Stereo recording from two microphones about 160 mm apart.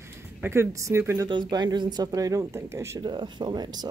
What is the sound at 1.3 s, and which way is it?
Speech, 30° right (ahead or behind).